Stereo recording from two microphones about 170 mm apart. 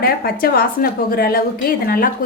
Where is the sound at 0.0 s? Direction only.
60° left (ahead or behind).